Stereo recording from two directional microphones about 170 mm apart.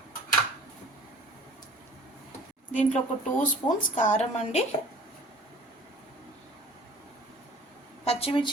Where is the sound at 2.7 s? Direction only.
45° left (ahead or behind).